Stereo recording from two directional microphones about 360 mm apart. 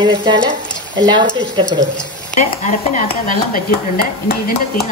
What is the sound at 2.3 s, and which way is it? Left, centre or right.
Speech, left.